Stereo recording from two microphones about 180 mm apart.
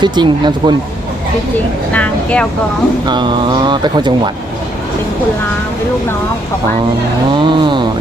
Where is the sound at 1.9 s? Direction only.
10° left (ahead or behind).